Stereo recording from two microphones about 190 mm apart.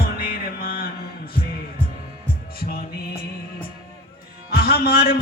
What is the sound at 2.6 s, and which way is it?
Music, 50° left (ahead or behind).